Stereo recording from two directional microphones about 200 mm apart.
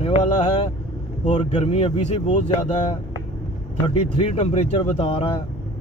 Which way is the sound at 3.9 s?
30° left (ahead or behind).